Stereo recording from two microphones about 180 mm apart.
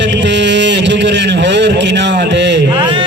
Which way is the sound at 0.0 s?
75° right (ahead or behind).